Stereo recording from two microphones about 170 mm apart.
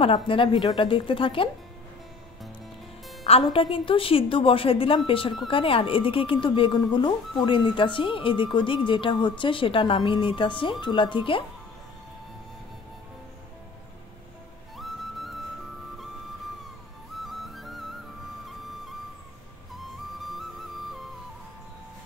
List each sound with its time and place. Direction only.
0.0 s a woman's voice: 30° left (ahead or behind)
3.5 s a woman's voice: 30° left (ahead or behind)
14.8 s music: centre (ahead or behind)
17.3 s music: centre (ahead or behind)
19.7 s music: centre (ahead or behind)